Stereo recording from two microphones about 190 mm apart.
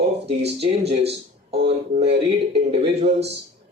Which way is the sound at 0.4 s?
35° right (ahead or behind).